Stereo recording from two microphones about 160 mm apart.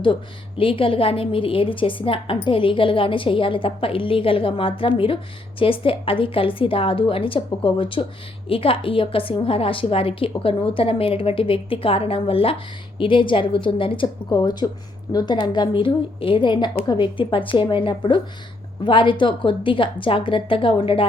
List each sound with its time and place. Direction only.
0.0 s a woman's voice: 30° left (ahead or behind)